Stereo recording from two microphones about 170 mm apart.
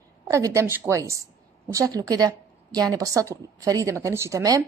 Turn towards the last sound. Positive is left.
turn(degrees=-20)  # may be behind; listen again after turning